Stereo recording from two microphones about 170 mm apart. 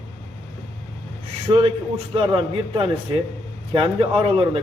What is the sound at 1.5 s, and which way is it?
A man's voice, 25° right (ahead or behind).